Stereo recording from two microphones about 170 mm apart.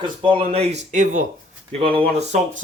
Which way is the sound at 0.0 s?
30° right (ahead or behind).